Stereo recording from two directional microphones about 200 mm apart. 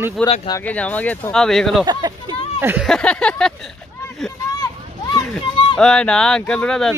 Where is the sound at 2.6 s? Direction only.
10° right (ahead or behind).